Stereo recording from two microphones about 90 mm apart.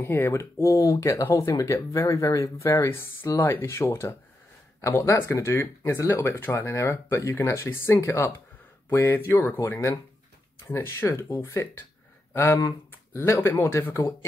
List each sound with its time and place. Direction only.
0.0 s speech: 25° left (ahead or behind)
8.8 s speech: 20° left (ahead or behind)
13.1 s speech: 30° left (ahead or behind)